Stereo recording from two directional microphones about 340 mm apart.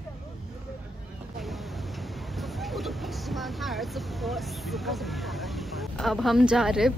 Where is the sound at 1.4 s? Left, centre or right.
Centre.